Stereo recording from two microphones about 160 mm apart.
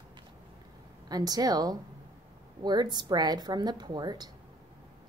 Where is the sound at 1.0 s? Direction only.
25° right (ahead or behind).